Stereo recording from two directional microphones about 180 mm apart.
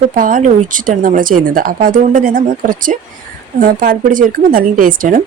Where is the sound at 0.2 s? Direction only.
50° right (ahead or behind).